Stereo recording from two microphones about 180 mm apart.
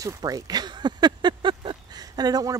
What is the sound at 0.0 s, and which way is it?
Speech, 20° right (ahead or behind).